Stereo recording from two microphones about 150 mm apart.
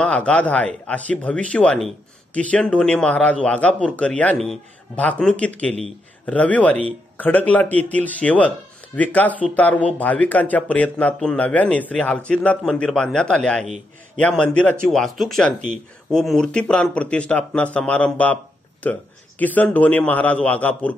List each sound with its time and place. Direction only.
0.0 s speech: 10° left (ahead or behind)